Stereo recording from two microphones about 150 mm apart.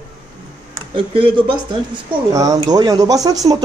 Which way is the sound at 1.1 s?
35° right (ahead or behind).